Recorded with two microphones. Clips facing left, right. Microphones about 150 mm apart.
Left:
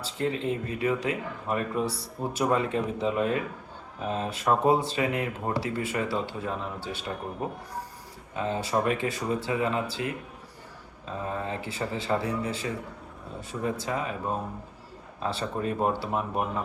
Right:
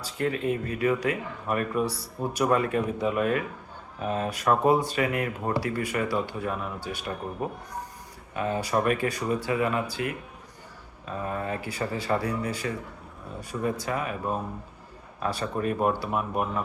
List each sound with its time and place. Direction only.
0.0 s speech: 25° left (ahead or behind)
8.3 s speech: 25° left (ahead or behind)
15.2 s speech: 25° left (ahead or behind)